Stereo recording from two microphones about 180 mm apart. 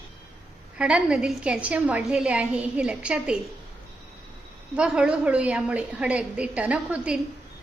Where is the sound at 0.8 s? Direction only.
5° right (ahead or behind).